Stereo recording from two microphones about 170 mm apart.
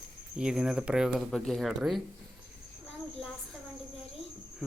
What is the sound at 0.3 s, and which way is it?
Speech, 5° right (ahead or behind).